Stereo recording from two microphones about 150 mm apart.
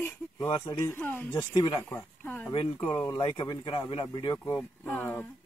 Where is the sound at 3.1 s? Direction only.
30° left (ahead or behind).